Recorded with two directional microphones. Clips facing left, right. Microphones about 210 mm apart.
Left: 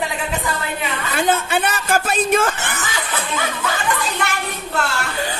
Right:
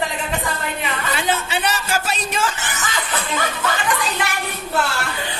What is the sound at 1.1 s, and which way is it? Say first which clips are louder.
Speech: left 5 dB; 50° left (ahead or behind).